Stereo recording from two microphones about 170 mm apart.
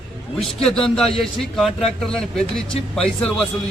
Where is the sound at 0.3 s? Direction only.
5° left (ahead or behind).